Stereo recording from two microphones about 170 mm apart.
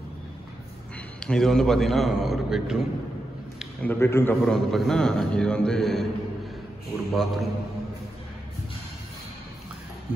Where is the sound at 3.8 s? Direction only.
15° left (ahead or behind).